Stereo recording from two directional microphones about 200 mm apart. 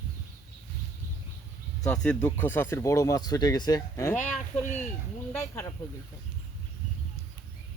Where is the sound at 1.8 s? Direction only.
5° left (ahead or behind).